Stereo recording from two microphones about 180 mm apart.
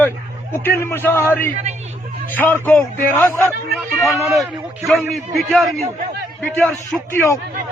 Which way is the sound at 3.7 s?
Centre (ahead or behind).